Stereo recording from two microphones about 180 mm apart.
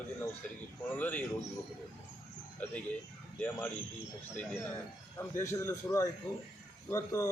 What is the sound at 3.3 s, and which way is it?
Speech, 10° left (ahead or behind).